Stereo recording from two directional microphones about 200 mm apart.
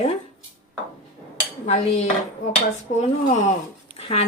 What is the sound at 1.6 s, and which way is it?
Speech, 35° left (ahead or behind).